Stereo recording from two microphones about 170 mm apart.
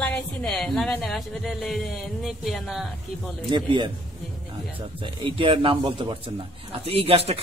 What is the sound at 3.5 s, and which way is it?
Speech, 25° right (ahead or behind).